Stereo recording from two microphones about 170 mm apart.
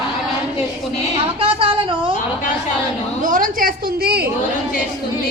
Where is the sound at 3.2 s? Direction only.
50° right (ahead or behind).